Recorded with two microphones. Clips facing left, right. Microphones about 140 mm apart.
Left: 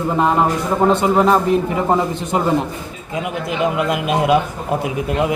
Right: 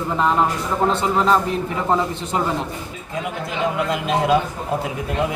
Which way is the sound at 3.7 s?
15° left (ahead or behind).